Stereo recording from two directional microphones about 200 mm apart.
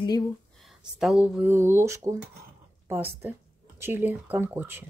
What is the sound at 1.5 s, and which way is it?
Speech, 15° right (ahead or behind).